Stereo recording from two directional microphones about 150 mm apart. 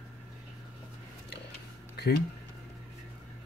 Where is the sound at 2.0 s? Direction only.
90° left.